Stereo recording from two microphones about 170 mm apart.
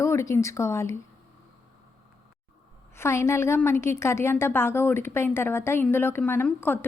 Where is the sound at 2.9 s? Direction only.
15° left (ahead or behind).